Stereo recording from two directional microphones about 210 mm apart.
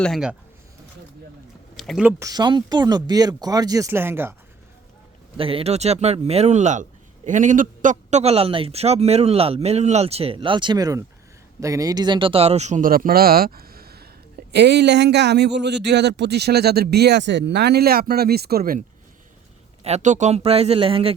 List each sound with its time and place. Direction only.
0.0 s speech: centre (ahead or behind)
1.7 s a sound: centre (ahead or behind)
2.0 s speech: 15° right (ahead or behind)
5.4 s a man's voice: 25° right (ahead or behind); by 18.9 s 45° right (ahead or behind)
19.8 s a man's voice: 35° right (ahead or behind)